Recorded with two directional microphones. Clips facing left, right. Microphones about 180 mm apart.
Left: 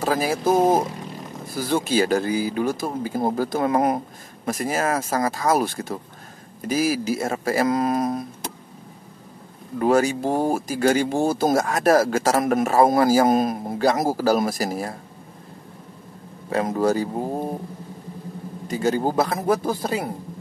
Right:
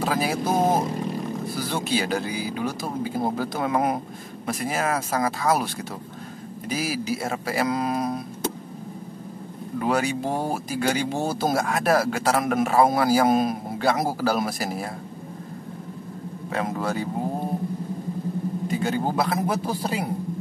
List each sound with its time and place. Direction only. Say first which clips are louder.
0.0 s speech: left 2 dB; 45° left (ahead or behind)
1.5 s speech: left 6 dB; 45° left (ahead or behind)
9.8 s speech: left 5 dB; 45° left (ahead or behind)
16.5 s speech: left 6 dB; 40° left (ahead or behind)
18.7 s speech: left 5 dB; 40° left (ahead or behind)